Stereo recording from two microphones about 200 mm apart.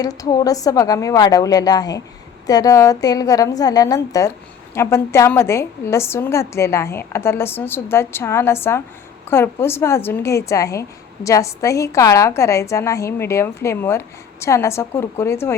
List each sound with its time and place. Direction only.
0.0 s a woman's voice: 20° left (ahead or behind)